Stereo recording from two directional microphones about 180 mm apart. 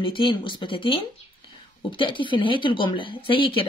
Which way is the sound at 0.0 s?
30° left (ahead or behind).